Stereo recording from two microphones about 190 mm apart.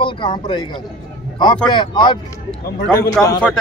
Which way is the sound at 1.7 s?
25° left (ahead or behind).